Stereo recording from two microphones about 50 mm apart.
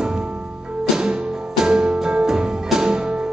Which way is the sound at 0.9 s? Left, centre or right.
Centre.